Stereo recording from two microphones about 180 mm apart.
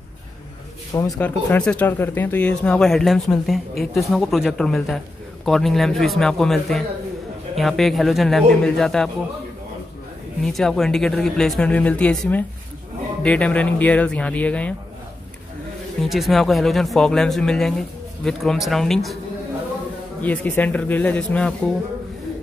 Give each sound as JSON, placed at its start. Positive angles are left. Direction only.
{"t": 0.9, "sound": "speech", "side_deg": 20}
{"t": 1.2, "sound": "speech", "side_deg": 5}
{"t": 10.4, "sound": "speech", "side_deg": 0}
{"t": 16.0, "sound": "speech", "side_deg": 0}
{"t": 20.2, "sound": "speech", "side_deg": 10}